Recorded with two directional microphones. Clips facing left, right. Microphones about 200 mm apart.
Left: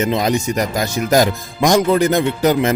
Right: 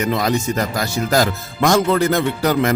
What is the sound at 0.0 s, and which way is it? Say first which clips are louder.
Speech: left 2 dB; 20° left (ahead or behind).